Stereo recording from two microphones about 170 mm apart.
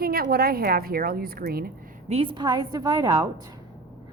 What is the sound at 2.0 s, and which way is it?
A woman's voice, 35° right (ahead or behind).